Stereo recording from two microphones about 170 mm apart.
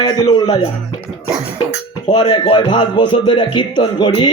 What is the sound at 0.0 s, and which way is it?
Music, 25° left (ahead or behind).